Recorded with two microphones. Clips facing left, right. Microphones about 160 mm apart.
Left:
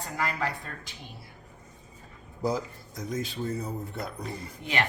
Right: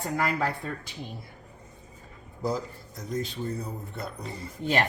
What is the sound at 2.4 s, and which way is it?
Speech, centre (ahead or behind).